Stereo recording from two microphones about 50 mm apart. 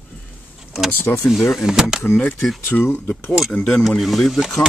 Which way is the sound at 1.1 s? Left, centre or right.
Left.